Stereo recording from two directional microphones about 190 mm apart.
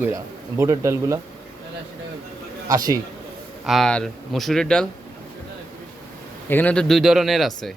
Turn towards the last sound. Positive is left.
turn(degrees=0)  # may be behind; listen again after turning